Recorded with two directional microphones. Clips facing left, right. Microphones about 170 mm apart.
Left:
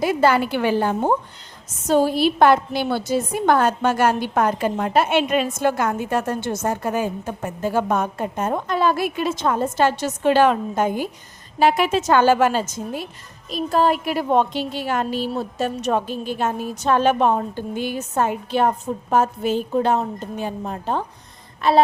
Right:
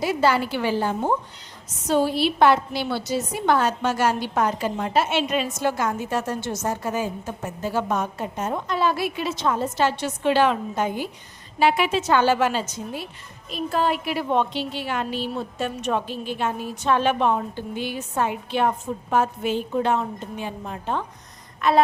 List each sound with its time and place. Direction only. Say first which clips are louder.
0.0 s a woman's voice: left 3 dB; 55° left (ahead or behind)
1.9 s a woman's voice: left 3 dB; 45° left (ahead or behind)